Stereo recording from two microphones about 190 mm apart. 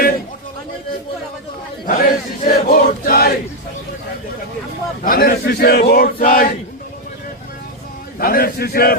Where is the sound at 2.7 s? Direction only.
50° left (ahead or behind).